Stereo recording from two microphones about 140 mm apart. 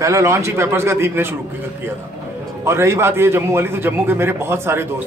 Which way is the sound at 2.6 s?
20° right (ahead or behind).